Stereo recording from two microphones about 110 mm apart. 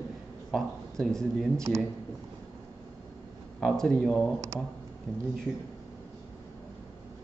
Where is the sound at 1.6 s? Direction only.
25° right (ahead or behind).